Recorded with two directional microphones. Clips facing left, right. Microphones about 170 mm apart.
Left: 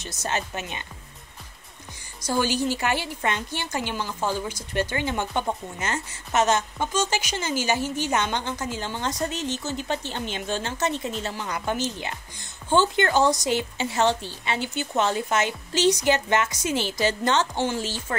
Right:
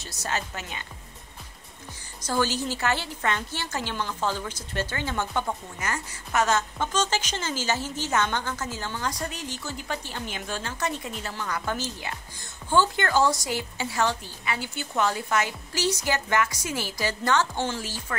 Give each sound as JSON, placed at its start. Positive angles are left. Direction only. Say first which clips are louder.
{"t": 0.0, "sound": "a woman's voice", "louder": "left 3 dB", "side_deg": 20}
{"t": 2.2, "sound": "a woman's voice", "louder": "left 3 dB", "side_deg": 15}